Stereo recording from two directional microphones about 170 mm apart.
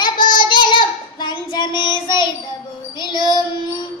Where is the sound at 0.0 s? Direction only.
25° left (ahead or behind).